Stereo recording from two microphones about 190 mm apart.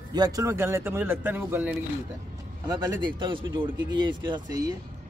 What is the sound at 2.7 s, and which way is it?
Speech, 20° right (ahead or behind).